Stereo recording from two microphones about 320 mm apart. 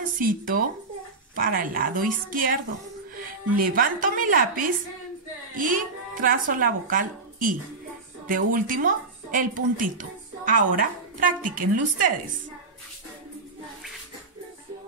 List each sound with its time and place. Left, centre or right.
0.2 s a woman's voice: right